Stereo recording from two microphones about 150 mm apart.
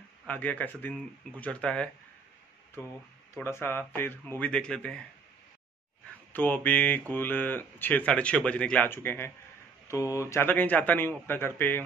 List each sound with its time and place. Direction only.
0.3 s speech: 10° left (ahead or behind)
3.4 s speech: 15° left (ahead or behind)
6.3 s speech: 10° left (ahead or behind)